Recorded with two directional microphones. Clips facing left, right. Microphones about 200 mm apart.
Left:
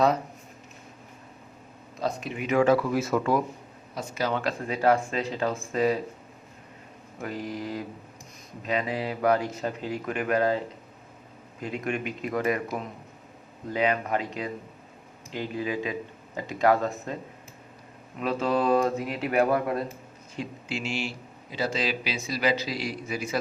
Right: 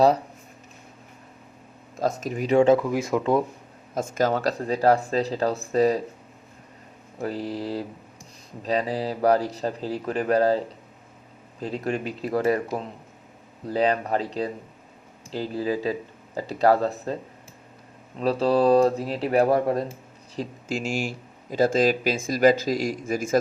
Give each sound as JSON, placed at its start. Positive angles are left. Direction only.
{"t": 2.0, "sound": "speech", "side_deg": -45}
{"t": 3.9, "sound": "speech", "side_deg": -50}
{"t": 7.2, "sound": "speech", "side_deg": -35}
{"t": 11.6, "sound": "speech", "side_deg": -35}
{"t": 18.2, "sound": "speech", "side_deg": -35}